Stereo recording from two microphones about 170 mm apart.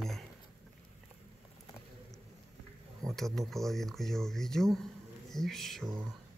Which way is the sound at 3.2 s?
Centre (ahead or behind).